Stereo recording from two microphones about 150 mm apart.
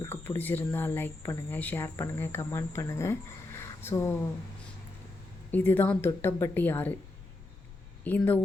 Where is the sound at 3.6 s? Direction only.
20° left (ahead or behind).